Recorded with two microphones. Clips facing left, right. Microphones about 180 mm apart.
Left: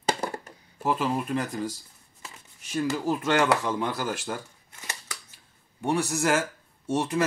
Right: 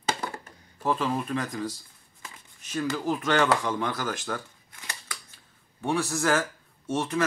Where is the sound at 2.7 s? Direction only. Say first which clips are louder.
Left 1 dB; 10° left (ahead or behind).